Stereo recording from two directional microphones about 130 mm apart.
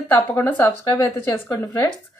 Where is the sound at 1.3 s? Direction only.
30° left (ahead or behind).